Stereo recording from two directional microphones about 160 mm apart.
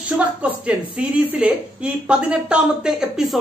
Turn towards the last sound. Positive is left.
turn(degrees=0)  # may be behind; listen again after turning